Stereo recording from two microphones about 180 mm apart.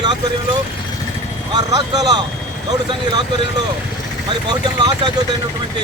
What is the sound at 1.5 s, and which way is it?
Speech, 20° right (ahead or behind).